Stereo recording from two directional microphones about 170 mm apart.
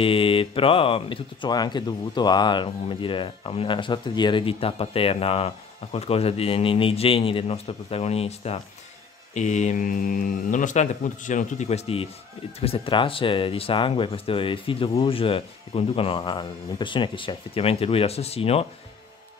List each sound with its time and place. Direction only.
0.0 s speech: 30° left (ahead or behind)